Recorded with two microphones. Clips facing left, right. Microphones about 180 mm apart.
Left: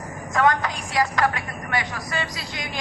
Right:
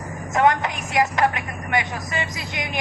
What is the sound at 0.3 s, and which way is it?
A woman's voice, 20° right (ahead or behind).